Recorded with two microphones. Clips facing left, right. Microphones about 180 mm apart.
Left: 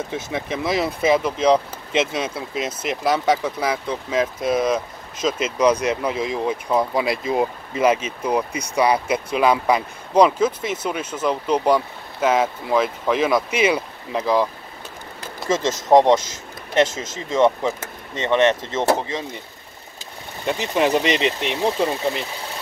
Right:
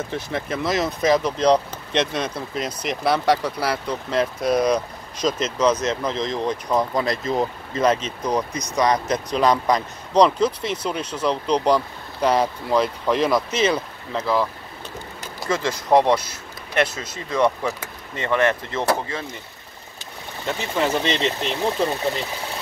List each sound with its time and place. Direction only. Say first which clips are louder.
0.1 s speech: even; 10° left (ahead or behind)
17.3 s speech: left 3 dB; 20° left (ahead or behind)
20.4 s speech: left 3 dB; 15° left (ahead or behind)